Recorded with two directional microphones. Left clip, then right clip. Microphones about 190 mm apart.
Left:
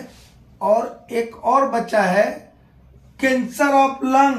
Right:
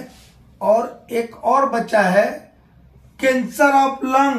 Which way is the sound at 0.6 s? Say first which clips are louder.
Right 1 dB; 20° right (ahead or behind).